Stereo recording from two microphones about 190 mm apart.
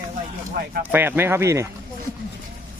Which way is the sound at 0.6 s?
55° right (ahead or behind).